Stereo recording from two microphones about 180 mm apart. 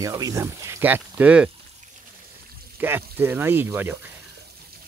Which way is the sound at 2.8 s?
10° right (ahead or behind).